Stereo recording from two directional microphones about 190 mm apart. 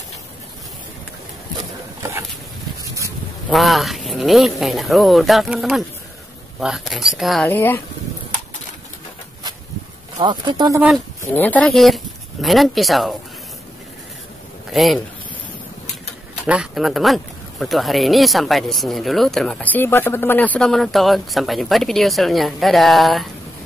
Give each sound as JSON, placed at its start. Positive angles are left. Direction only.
{"t": 3.4, "sound": "speech", "side_deg": 0}
{"t": 7.4, "sound": "speech", "side_deg": 10}
{"t": 10.1, "sound": "speech", "side_deg": -25}
{"t": 11.3, "sound": "speech", "side_deg": 10}
{"t": 14.7, "sound": "speech", "side_deg": 0}
{"t": 16.4, "sound": "speech", "side_deg": -5}